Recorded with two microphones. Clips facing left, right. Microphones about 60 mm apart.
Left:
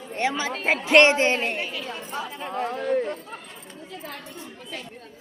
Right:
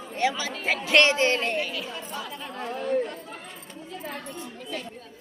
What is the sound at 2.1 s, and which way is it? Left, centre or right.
Speech, left.